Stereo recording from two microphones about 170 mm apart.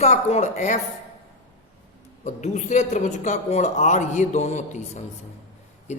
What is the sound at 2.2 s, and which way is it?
Speech, 40° left (ahead or behind).